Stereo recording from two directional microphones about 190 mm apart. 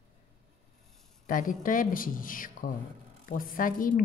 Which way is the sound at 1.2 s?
45° left (ahead or behind).